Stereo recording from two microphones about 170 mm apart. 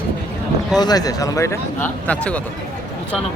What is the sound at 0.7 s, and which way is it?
Speech, 20° left (ahead or behind).